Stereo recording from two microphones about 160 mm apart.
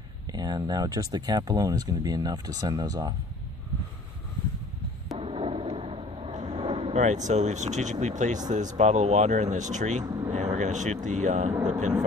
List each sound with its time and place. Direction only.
0.3 s speech: 25° right (ahead or behind)
5.2 s a sound: 35° right (ahead or behind)
8.2 s speech: 50° right (ahead or behind)
10.0 s vehicle: 25° right (ahead or behind)
10.3 s vehicle: 45° right (ahead or behind)
11.1 s speech: 45° right (ahead or behind)